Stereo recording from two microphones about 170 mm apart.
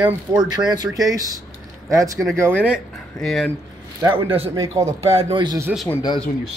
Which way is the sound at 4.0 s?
15° right (ahead or behind).